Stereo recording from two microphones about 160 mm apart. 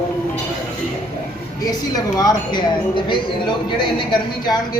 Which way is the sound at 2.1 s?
25° left (ahead or behind).